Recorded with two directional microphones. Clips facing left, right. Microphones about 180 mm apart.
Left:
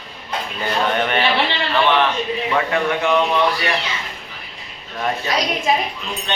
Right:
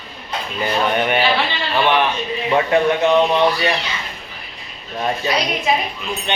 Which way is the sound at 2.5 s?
20° right (ahead or behind).